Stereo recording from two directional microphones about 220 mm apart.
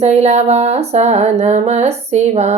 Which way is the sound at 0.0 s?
30° right (ahead or behind).